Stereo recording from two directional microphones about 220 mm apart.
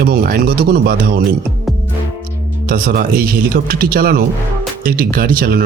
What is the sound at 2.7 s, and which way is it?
Speech, 40° right (ahead or behind).